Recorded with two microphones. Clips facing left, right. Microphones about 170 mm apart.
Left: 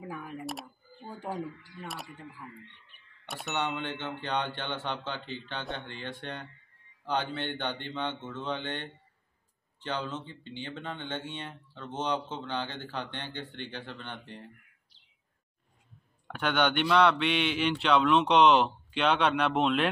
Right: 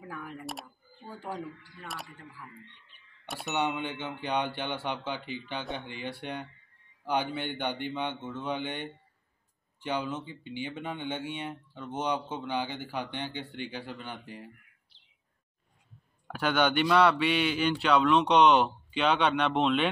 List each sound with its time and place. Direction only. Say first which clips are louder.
0.0 s a sound: left 2 dB; 15° left (ahead or behind)
3.3 s speech: right 1 dB; centre (ahead or behind)
4.0 s speech: right 2 dB; 10° right (ahead or behind)
16.3 s speech: right 1 dB; 5° right (ahead or behind)